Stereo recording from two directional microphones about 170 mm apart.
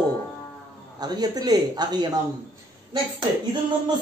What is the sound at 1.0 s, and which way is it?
A woman's voice, 25° right (ahead or behind).